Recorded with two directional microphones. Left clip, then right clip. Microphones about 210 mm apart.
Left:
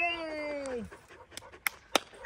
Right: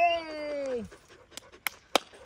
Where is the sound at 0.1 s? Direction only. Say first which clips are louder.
Right 4 dB; 50° right (ahead or behind).